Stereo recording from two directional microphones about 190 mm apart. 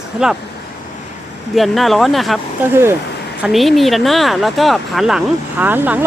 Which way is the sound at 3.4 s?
Centre (ahead or behind).